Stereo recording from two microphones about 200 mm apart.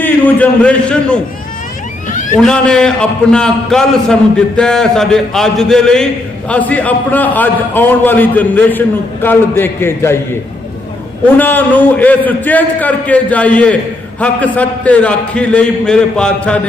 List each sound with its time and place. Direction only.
0.0 s speech: 10° left (ahead or behind)
2.0 s a sound: 40° left (ahead or behind)
2.4 s a man's voice: 5° left (ahead or behind)
11.3 s a man's voice: 10° left (ahead or behind)